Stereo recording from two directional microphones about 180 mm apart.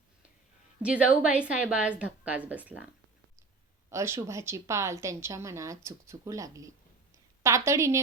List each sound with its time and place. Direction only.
0.8 s a woman's voice: 5° right (ahead or behind)
3.8 s a woman's voice: 15° right (ahead or behind)